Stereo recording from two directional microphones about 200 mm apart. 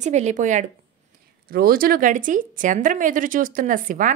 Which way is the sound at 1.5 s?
45° right (ahead or behind).